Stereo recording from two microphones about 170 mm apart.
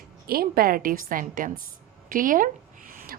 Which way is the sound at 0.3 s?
60° right (ahead or behind).